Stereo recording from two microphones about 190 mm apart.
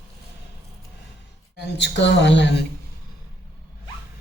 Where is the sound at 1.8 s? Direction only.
65° left (ahead or behind).